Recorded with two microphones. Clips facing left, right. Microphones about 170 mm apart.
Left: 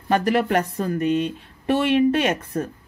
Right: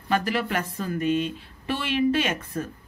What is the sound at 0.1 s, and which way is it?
A woman's voice, 50° left (ahead or behind).